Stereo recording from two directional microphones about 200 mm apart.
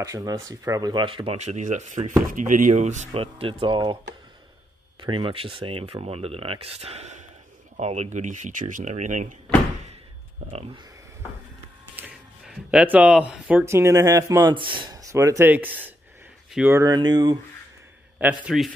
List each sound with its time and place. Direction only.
0.0 s speech: 15° right (ahead or behind)
5.0 s speech: 25° right (ahead or behind); by 9.3 s 40° right (ahead or behind)
10.5 s speech: 30° right (ahead or behind)
11.9 s speech: 5° right (ahead or behind)
18.2 s a man's voice: 5° right (ahead or behind)